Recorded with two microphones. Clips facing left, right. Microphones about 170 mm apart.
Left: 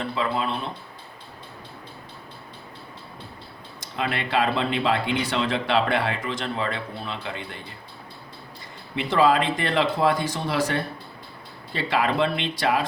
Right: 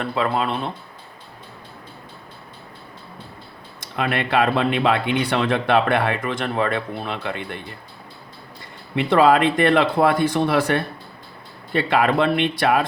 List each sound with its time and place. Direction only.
0.0 s speech: 60° right (ahead or behind)
3.9 s speech: 60° right (ahead or behind)
9.0 s speech: 60° right (ahead or behind)